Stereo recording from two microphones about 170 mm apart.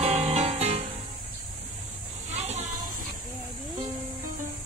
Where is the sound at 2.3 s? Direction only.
40° right (ahead or behind).